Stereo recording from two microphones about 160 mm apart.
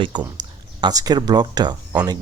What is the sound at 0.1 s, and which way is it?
Speech, 30° right (ahead or behind).